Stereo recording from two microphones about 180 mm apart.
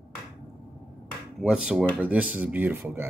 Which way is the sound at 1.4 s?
5° right (ahead or behind).